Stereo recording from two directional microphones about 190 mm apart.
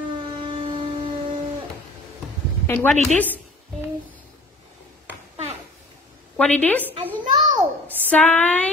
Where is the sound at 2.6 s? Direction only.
10° left (ahead or behind).